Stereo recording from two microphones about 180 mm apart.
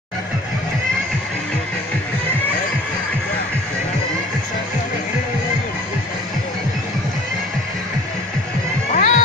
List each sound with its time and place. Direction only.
8.9 s music: 45° left (ahead or behind)